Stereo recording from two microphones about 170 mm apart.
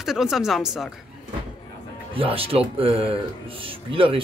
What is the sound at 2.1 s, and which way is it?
Speech, 30° right (ahead or behind).